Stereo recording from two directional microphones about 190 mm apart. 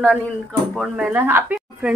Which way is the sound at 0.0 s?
5° left (ahead or behind).